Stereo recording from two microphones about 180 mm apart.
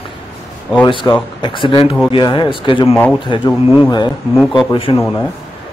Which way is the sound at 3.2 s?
25° left (ahead or behind).